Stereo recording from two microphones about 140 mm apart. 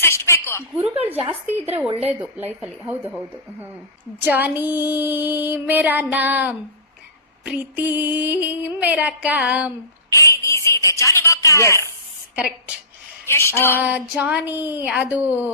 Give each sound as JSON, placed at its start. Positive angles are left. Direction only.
{"t": 0.0, "sound": "a sound", "side_deg": 20}
{"t": 1.1, "sound": "a woman's voice", "side_deg": -45}
{"t": 2.4, "sound": "music", "side_deg": -10}
{"t": 3.1, "sound": "speech", "side_deg": -5}
{"t": 4.2, "sound": "music", "side_deg": -10}
{"t": 10.1, "sound": "a woman's voice", "side_deg": 20}
{"t": 13.2, "sound": "speech", "side_deg": 20}
{"t": 13.7, "sound": "music", "side_deg": -10}